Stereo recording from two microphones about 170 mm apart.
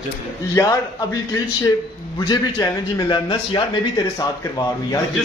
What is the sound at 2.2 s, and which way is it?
A man's voice, 25° left (ahead or behind).